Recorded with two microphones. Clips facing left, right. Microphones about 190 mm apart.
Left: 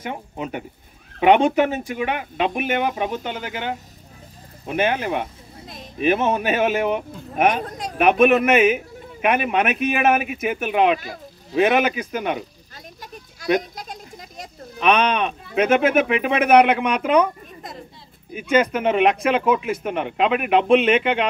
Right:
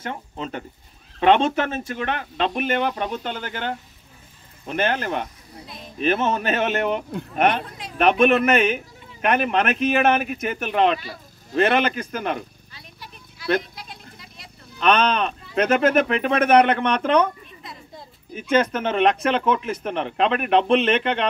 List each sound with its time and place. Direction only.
0.0 s a man's voice: 10° left (ahead or behind)
7.6 s speech: 45° left (ahead or behind)
8.0 s a man's voice: 5° left (ahead or behind)
12.7 s a sound: 45° left (ahead or behind)
14.8 s a man's voice: 5° left (ahead or behind)
17.6 s a sound: 45° left (ahead or behind)
18.5 s a man's voice: 10° left (ahead or behind)